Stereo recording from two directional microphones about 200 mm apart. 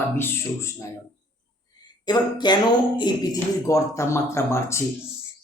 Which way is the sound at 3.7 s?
15° left (ahead or behind).